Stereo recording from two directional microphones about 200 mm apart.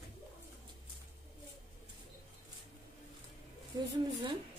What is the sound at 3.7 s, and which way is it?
Speech, 20° right (ahead or behind).